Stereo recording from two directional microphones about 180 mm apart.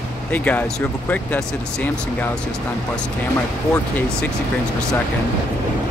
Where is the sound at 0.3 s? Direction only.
10° left (ahead or behind).